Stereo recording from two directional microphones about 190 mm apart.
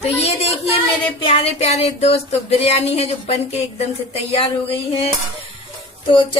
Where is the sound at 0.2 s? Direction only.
35° left (ahead or behind).